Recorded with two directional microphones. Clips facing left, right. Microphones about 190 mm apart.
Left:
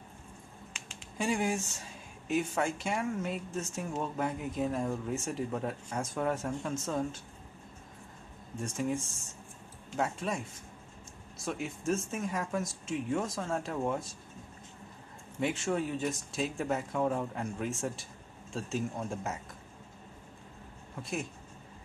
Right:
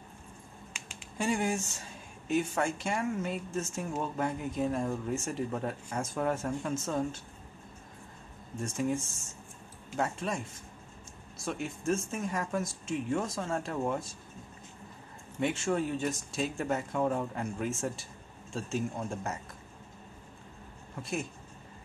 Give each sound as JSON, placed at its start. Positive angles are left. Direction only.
{"t": 0.7, "sound": "a sound", "side_deg": -10}
{"t": 1.1, "sound": "speech", "side_deg": 0}
{"t": 8.5, "sound": "speech", "side_deg": 0}
{"t": 15.4, "sound": "speech", "side_deg": 0}
{"t": 21.0, "sound": "speech", "side_deg": 0}